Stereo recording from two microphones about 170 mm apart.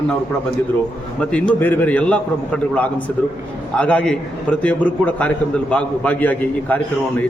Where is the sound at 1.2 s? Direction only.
5° left (ahead or behind).